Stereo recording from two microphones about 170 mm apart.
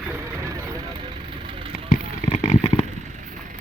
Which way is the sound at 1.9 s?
55° left (ahead or behind).